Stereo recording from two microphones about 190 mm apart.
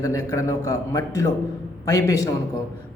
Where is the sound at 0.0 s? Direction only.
15° left (ahead or behind).